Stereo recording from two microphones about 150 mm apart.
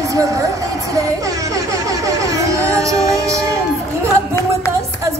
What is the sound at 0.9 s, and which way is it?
Music, 25° right (ahead or behind).